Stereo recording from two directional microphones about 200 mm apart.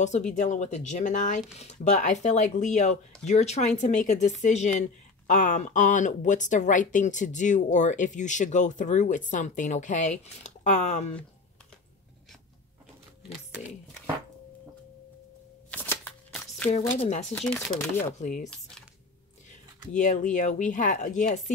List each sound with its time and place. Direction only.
0.3 s speech: 40° left (ahead or behind)
15.7 s shuffling cards: 10° left (ahead or behind)
16.3 s a sound: 10° left (ahead or behind)
17.0 s speech: 35° left (ahead or behind)
17.3 s speech: 5° left (ahead or behind)
18.2 s speech: 40° left (ahead or behind)
19.9 s speech: 40° left (ahead or behind)